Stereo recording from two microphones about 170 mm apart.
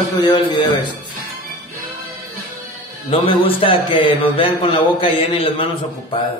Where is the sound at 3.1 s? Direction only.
30° left (ahead or behind).